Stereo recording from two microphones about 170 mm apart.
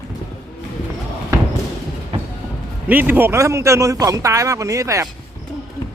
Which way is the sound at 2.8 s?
10° right (ahead or behind).